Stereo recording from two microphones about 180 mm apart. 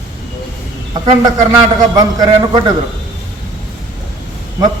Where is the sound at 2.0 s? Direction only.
20° right (ahead or behind).